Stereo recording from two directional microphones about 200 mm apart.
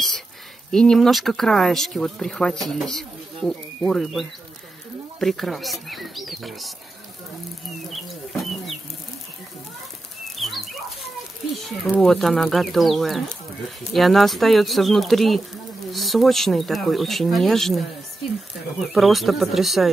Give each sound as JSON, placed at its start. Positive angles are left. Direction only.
{"t": 0.7, "sound": "speech", "side_deg": 0}
{"t": 7.9, "sound": "speech", "side_deg": 0}
{"t": 10.3, "sound": "dog", "side_deg": 0}
{"t": 11.5, "sound": "speech", "side_deg": 0}
{"t": 18.9, "sound": "speech", "side_deg": 0}